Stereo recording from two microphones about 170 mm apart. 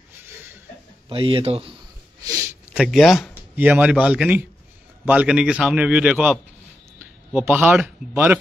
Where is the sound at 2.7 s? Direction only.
5° right (ahead or behind).